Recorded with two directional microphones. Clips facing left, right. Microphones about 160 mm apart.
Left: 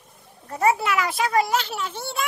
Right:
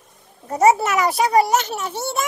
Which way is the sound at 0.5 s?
45° right (ahead or behind).